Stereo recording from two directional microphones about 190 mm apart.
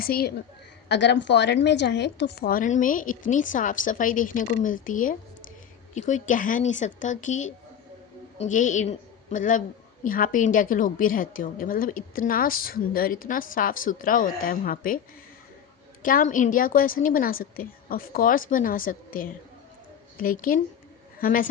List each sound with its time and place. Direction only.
0.0 s a woman's voice: 50° left (ahead or behind)
0.9 s a woman's voice: 65° left (ahead or behind); by 15.0 s 45° left (ahead or behind)
16.0 s a woman's voice: 45° left (ahead or behind)